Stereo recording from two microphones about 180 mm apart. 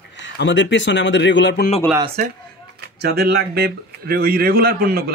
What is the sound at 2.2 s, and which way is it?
Speech, 45° right (ahead or behind).